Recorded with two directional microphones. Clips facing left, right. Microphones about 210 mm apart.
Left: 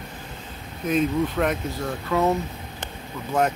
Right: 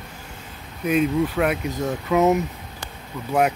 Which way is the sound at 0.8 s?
5° right (ahead or behind).